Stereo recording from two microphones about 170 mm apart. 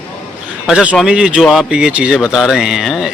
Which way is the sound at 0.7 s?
5° right (ahead or behind).